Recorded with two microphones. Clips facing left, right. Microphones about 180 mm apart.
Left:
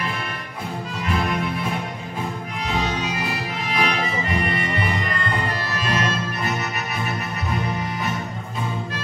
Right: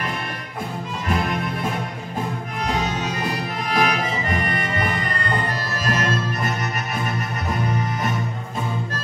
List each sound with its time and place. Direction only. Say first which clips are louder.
2.6 s music: right 1 dB; 45° right (ahead or behind)